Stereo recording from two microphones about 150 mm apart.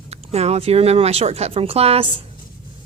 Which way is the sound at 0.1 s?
45° right (ahead or behind).